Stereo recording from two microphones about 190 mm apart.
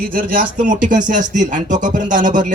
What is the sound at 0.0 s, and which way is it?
Speech, 50° right (ahead or behind).